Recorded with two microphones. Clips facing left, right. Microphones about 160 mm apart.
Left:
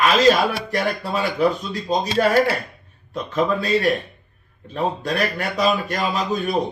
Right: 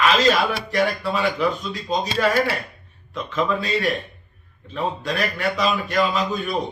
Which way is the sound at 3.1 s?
45° left (ahead or behind).